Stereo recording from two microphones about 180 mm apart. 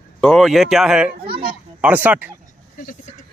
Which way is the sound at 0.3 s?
Centre (ahead or behind).